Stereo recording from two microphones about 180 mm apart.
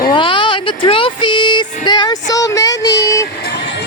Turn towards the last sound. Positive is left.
turn(degrees=65)  # may be behind; listen again after turning